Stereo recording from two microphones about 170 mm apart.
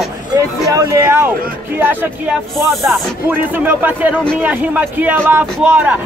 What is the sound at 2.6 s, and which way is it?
Speech, centre (ahead or behind).